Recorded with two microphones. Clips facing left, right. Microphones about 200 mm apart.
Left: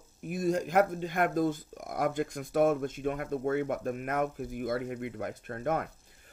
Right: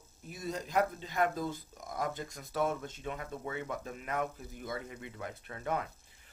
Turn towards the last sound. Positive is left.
turn(degrees=50)  # may be behind; listen again after turning